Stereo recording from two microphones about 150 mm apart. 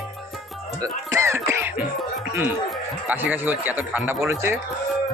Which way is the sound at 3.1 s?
10° right (ahead or behind).